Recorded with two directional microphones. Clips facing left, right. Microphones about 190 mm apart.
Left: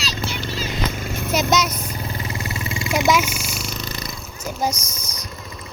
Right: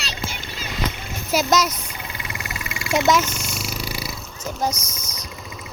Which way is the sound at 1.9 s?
40° left (ahead or behind).